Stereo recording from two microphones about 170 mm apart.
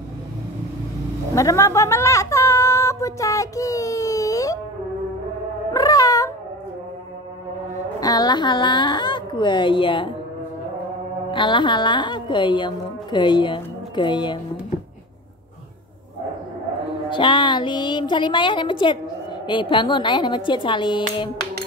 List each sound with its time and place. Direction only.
1.3 s speech: 20° left (ahead or behind)
5.7 s cat: 20° left (ahead or behind)
8.0 s a woman's voice: 25° left (ahead or behind)
11.3 s a woman's voice: 25° left (ahead or behind)
17.1 s a woman's voice: 25° left (ahead or behind)